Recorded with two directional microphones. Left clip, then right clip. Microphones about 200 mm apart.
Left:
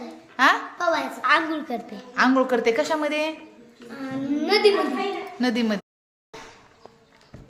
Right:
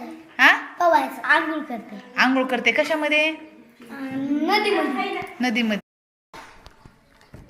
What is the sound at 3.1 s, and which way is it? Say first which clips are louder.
Speech: right 5 dB; 50° left (ahead or behind).